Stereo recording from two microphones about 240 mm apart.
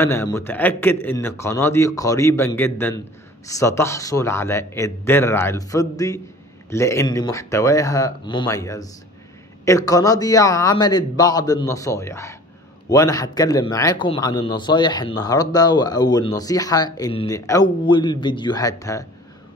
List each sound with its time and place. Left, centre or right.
0.0 s a man's voice: centre